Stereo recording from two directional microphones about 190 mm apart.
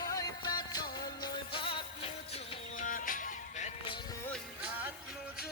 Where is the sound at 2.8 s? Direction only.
45° left (ahead or behind).